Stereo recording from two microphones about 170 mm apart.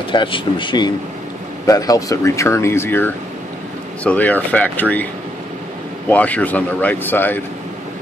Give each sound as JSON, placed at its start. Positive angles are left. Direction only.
{"t": 0.1, "sound": "speech", "side_deg": 30}
{"t": 6.0, "sound": "speech", "side_deg": 10}